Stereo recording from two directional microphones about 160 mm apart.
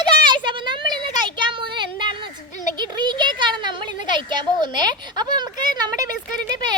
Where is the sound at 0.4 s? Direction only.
30° right (ahead or behind).